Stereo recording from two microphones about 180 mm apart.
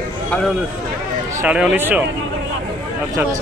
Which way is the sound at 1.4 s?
5° right (ahead or behind).